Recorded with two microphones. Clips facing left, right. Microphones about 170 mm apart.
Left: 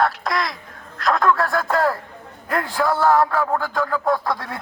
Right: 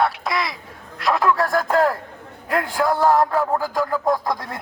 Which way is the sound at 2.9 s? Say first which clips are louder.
Even; 15° right (ahead or behind).